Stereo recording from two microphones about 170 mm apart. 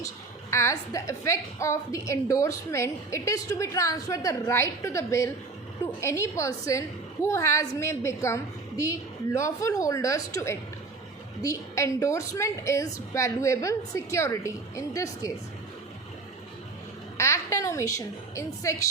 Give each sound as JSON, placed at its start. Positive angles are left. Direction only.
{"t": 0.5, "sound": "a woman's voice", "side_deg": 20}
{"t": 17.2, "sound": "a woman's voice", "side_deg": 15}